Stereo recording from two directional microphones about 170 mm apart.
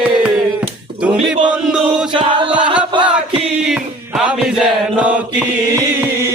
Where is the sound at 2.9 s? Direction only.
30° right (ahead or behind).